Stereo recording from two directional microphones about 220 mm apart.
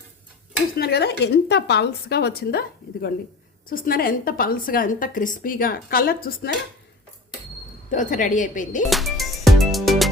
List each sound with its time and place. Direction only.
0.8 s a woman's voice: 45° left (ahead or behind)
7.9 s a woman's voice: 35° left (ahead or behind)
8.9 s music: centre (ahead or behind)